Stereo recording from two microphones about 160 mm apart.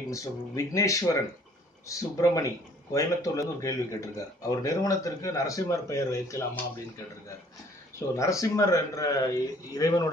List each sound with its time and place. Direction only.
0.1 s speech: 20° left (ahead or behind)
8.2 s speech: 20° left (ahead or behind)